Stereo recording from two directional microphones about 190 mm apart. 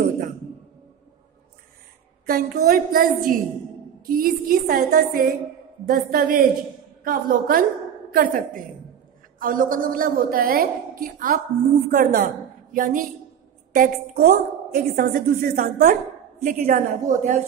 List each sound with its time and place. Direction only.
2.2 s a woman's voice: 50° right (ahead or behind)